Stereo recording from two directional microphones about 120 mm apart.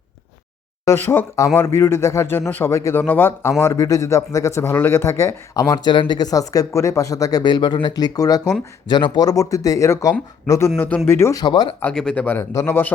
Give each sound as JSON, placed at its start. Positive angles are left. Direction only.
{"t": 0.9, "sound": "speech", "side_deg": 20}
{"t": 10.8, "sound": "speech", "side_deg": 15}
{"t": 11.4, "sound": "speech", "side_deg": 40}
{"t": 11.8, "sound": "speech", "side_deg": 10}